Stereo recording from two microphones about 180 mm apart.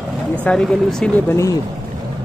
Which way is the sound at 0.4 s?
5° left (ahead or behind).